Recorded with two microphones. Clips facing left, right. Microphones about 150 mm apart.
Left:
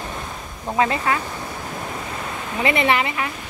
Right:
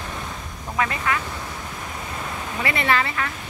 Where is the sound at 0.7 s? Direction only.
25° left (ahead or behind).